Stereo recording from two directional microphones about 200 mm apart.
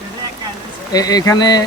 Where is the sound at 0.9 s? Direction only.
20° left (ahead or behind).